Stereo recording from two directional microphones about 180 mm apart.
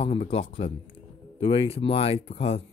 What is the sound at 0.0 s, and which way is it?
Speech, 30° left (ahead or behind).